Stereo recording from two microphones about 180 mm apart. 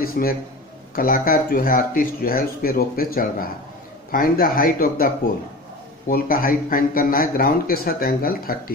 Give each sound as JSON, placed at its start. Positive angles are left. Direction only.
{"t": 0.0, "sound": "a man's voice", "side_deg": 55}